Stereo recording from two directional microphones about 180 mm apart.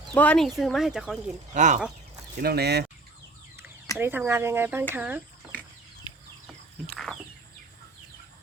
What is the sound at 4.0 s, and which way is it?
Speech, 10° right (ahead or behind).